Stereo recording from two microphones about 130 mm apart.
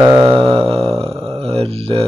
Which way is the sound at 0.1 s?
35° right (ahead or behind).